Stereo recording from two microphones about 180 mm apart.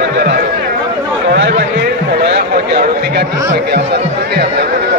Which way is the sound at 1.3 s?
75° right (ahead or behind).